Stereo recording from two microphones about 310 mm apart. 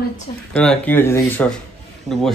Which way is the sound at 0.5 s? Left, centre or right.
Centre.